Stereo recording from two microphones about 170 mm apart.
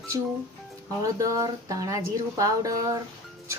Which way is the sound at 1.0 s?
20° right (ahead or behind).